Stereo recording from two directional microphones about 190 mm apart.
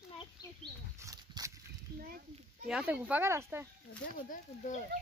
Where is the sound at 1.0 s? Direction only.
15° right (ahead or behind).